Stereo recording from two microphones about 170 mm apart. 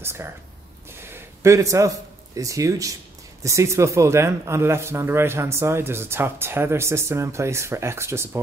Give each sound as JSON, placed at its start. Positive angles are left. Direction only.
{"t": 0.0, "sound": "a man's voice", "side_deg": -15}